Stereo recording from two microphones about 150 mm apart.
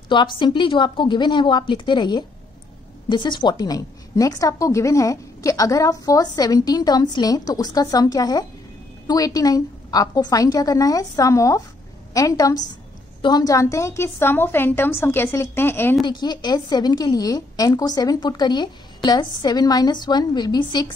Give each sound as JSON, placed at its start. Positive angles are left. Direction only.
{"t": 0.1, "sound": "a woman's voice", "side_deg": 30}
{"t": 16.1, "sound": "a woman's voice", "side_deg": 30}